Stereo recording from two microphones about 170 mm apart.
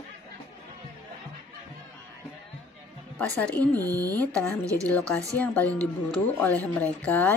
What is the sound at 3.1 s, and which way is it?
Speech, 5° left (ahead or behind).